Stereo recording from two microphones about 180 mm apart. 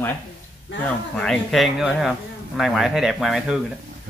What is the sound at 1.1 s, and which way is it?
Speech, 5° left (ahead or behind).